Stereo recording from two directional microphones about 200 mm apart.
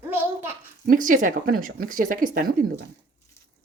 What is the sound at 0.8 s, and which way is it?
Speech, 40° right (ahead or behind).